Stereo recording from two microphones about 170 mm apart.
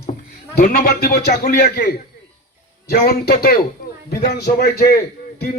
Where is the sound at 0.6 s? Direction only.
60° left (ahead or behind).